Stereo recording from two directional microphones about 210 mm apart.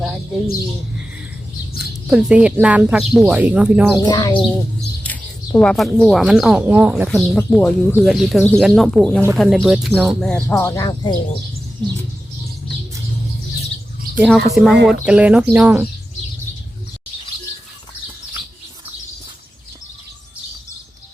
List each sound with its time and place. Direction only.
1.8 s speech: 5° right (ahead or behind)
3.9 s speech: 20° left (ahead or behind)
5.0 s speech: 5° left (ahead or behind)
10.5 s speech: 15° left (ahead or behind)
14.2 s speech: centre (ahead or behind)